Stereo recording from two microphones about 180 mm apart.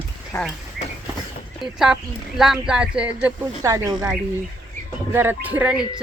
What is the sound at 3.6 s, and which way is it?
Speech, 15° right (ahead or behind).